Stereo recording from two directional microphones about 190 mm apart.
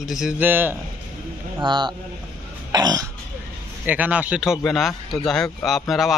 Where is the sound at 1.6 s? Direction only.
25° right (ahead or behind).